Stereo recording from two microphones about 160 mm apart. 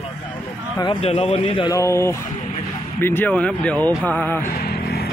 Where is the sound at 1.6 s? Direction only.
20° left (ahead or behind).